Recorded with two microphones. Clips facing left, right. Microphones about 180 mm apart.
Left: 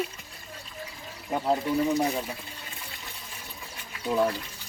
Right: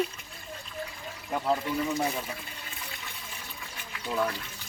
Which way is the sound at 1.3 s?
25° left (ahead or behind).